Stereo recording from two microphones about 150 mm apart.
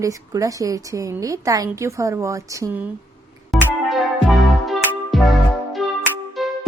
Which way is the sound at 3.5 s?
Centre (ahead or behind).